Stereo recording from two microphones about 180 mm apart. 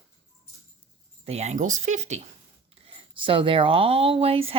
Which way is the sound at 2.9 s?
30° right (ahead or behind).